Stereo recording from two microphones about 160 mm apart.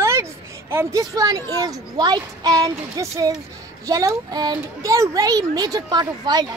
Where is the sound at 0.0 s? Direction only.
15° right (ahead or behind).